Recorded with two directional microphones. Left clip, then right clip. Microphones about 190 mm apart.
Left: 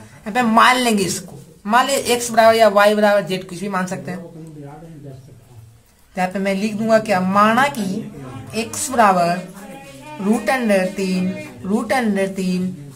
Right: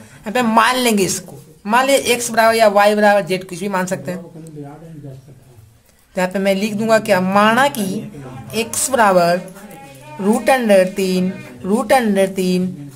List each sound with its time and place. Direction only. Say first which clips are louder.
0.2 s a woman's voice: even; 30° right (ahead or behind)
6.1 s a woman's voice: right 4 dB; 35° right (ahead or behind)
10.4 s a woman's voice: right 6 dB; 35° right (ahead or behind)